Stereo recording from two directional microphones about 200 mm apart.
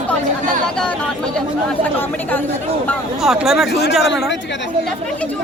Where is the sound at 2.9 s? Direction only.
Centre (ahead or behind).